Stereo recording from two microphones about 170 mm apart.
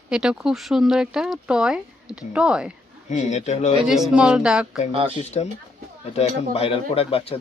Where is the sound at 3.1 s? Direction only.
40° left (ahead or behind).